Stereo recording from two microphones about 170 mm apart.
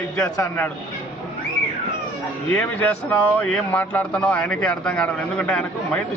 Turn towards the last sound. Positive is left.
turn(degrees=5)  # may be behind; listen again after turning